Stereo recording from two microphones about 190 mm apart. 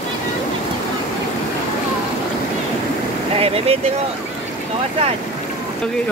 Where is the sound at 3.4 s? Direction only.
30° right (ahead or behind).